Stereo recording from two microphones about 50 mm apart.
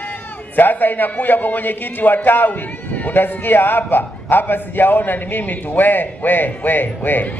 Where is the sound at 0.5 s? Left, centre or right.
Left.